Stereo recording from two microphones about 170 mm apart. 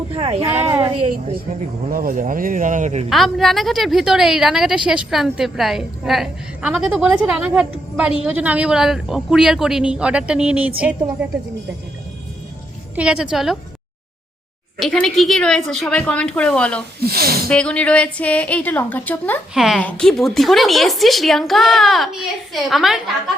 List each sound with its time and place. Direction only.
0.1 s a sound: 35° right (ahead or behind)
0.6 s a sound: 15° right (ahead or behind)
1.9 s speech: 55° right (ahead or behind)
3.1 s a woman's voice: centre (ahead or behind)
13.0 s a woman's voice: 5° right (ahead or behind)
14.8 s a woman's voice: centre (ahead or behind)
17.0 s speech: 65° right (ahead or behind)
17.5 s a woman's voice: 5° left (ahead or behind)
19.5 s a woman's voice: centre (ahead or behind)